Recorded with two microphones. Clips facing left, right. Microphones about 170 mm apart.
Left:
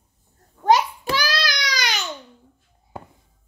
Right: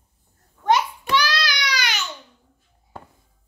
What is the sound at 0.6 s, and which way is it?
Child singing, 35° left (ahead or behind).